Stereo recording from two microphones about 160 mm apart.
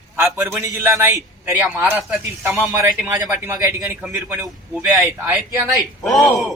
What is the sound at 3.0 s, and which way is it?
A man's voice, 20° right (ahead or behind).